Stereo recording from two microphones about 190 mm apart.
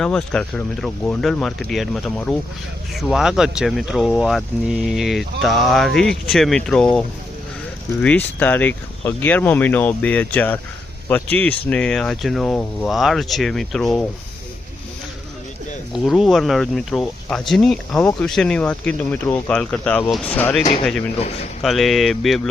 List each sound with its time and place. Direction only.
0.0 s speech: 5° left (ahead or behind)
8.0 s speech: 10° left (ahead or behind)
15.9 s speech: centre (ahead or behind)